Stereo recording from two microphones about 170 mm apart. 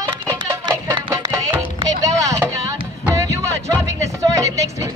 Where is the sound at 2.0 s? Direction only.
20° right (ahead or behind).